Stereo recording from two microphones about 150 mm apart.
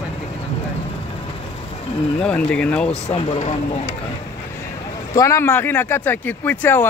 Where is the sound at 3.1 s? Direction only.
45° left (ahead or behind).